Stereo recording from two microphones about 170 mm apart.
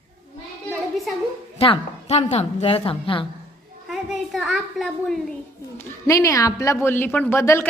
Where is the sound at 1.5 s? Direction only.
35° left (ahead or behind).